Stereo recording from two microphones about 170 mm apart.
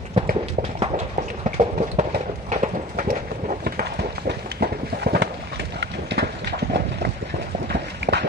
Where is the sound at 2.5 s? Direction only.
45° right (ahead or behind).